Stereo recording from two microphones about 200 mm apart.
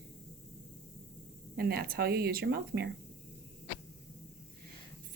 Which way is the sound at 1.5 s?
50° right (ahead or behind).